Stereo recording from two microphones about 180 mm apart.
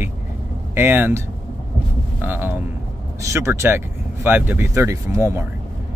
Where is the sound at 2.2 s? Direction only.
10° right (ahead or behind).